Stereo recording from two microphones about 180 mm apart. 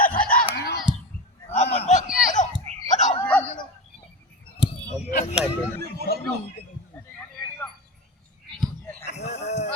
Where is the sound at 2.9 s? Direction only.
40° left (ahead or behind).